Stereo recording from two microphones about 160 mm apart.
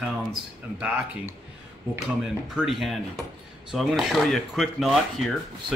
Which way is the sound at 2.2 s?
5° right (ahead or behind).